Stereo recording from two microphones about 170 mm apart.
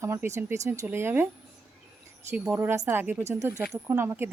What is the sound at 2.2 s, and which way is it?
Speech, 10° right (ahead or behind).